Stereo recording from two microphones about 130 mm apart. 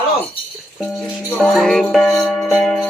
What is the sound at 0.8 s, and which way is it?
Music, 5° left (ahead or behind).